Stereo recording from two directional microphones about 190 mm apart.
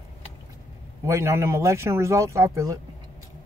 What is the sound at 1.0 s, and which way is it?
Speech, 15° right (ahead or behind).